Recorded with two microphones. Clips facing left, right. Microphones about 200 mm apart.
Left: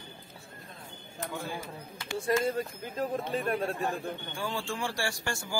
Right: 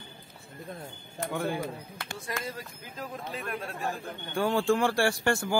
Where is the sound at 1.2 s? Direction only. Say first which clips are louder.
Right 6 dB; 60° right (ahead or behind).